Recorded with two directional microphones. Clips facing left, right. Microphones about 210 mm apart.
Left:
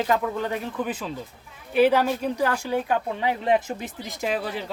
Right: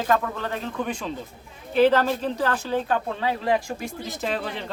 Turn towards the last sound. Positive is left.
turn(degrees=5)  # may be behind; listen again after turning